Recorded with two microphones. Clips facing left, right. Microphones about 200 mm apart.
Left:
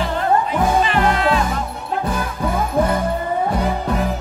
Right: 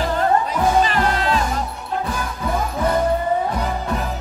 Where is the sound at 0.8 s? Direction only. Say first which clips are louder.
Left 3 dB; 40° right (ahead or behind).